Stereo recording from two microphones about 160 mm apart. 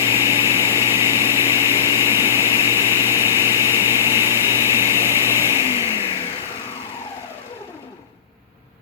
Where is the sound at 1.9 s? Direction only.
15° right (ahead or behind).